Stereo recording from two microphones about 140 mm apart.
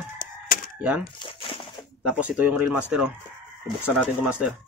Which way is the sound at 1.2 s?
35° left (ahead or behind).